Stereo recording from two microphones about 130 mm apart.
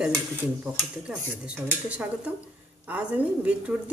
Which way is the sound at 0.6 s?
10° right (ahead or behind).